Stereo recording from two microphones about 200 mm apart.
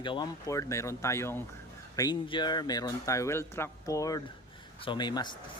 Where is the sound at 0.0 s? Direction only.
20° left (ahead or behind).